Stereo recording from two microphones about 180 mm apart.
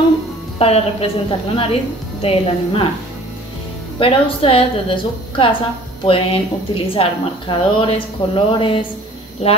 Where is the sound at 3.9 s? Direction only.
30° left (ahead or behind).